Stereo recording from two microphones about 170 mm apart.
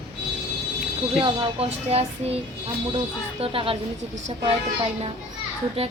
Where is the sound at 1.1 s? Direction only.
35° right (ahead or behind).